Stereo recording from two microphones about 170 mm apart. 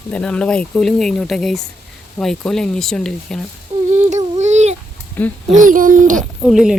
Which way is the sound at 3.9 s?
45° right (ahead or behind).